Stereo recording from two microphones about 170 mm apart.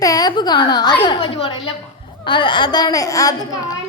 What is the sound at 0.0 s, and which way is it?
A woman's voice, 20° left (ahead or behind).